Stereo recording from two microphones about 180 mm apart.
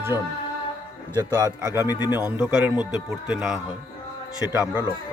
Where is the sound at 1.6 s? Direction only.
10° right (ahead or behind).